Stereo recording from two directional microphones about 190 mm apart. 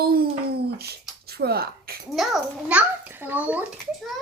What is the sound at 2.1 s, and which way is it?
A woman's voice, 5° right (ahead or behind).